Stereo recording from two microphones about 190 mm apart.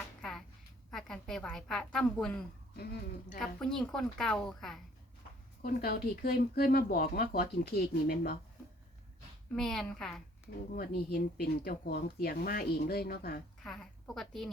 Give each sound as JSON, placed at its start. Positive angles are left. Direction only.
{"t": 0.2, "sound": "a sound", "side_deg": 0}
{"t": 0.9, "sound": "a woman's voice", "side_deg": 5}
{"t": 3.4, "sound": "a woman's voice", "side_deg": 0}
{"t": 5.6, "sound": "speech", "side_deg": 55}
{"t": 9.6, "sound": "a woman's voice", "side_deg": 0}
{"t": 10.7, "sound": "speech", "side_deg": 50}
{"t": 13.7, "sound": "a woman's voice", "side_deg": 0}